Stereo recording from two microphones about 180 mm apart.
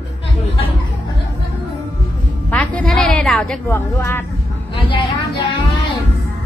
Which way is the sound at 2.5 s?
5° left (ahead or behind).